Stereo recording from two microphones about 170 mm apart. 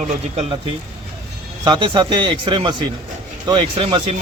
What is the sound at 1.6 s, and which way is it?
A man's voice, 30° right (ahead or behind).